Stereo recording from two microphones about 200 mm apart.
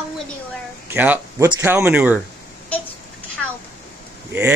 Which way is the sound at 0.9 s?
10° right (ahead or behind).